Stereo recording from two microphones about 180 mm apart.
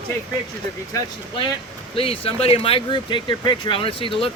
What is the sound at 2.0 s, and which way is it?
Speech, 30° left (ahead or behind).